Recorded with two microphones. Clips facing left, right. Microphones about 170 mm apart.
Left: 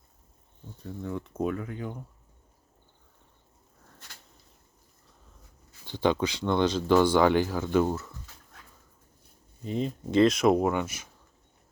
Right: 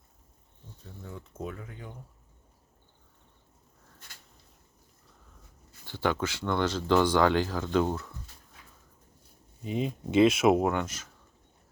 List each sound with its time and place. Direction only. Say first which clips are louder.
1.0 s speech: left 9 dB; 65° left (ahead or behind)
5.8 s speech: left 4 dB; 20° left (ahead or behind)
9.6 s speech: left 1 dB; 5° right (ahead or behind)